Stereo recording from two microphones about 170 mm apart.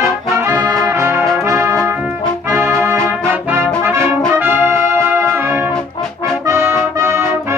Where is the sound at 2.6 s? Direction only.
15° right (ahead or behind).